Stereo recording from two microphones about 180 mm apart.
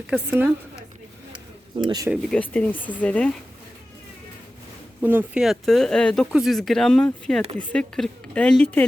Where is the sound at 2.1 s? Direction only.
5° left (ahead or behind).